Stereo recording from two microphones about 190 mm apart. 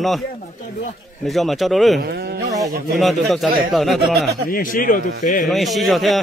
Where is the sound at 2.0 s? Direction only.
55° right (ahead or behind).